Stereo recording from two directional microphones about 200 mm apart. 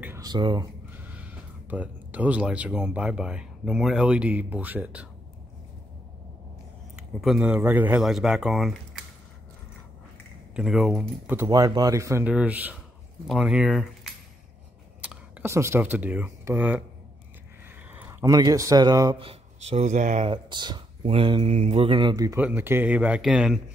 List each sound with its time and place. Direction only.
0.0 s speech: 15° right (ahead or behind)
0.9 s speech: 5° right (ahead or behind)
7.0 s speech: 5° right (ahead or behind)
10.5 s speech: centre (ahead or behind)
17.9 s speech: 15° right (ahead or behind); by 20.2 s 35° right (ahead or behind)
20.2 s speech: 20° right (ahead or behind); by 23.6 s 5° right (ahead or behind)